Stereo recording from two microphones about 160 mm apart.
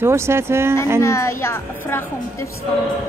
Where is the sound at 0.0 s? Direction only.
15° right (ahead or behind).